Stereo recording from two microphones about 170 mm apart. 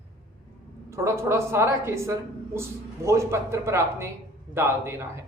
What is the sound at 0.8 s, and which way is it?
A woman's voice, 15° right (ahead or behind).